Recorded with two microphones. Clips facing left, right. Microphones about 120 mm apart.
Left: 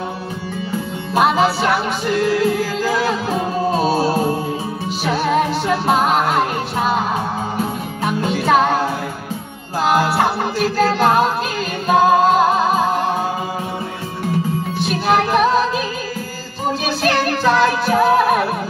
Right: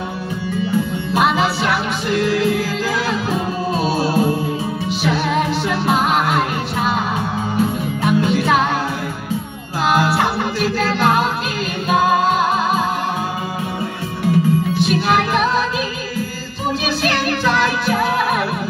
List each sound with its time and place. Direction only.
1.1 s music: 40° left (ahead or behind)
8.0 s music: 35° left (ahead or behind)
9.8 s music: 35° left (ahead or behind)
14.8 s music: 40° left (ahead or behind)
16.8 s music: 40° left (ahead or behind)